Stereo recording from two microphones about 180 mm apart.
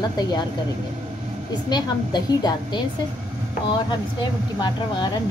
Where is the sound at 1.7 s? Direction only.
20° left (ahead or behind).